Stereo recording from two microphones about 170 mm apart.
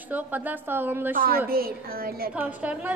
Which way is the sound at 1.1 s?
55° right (ahead or behind).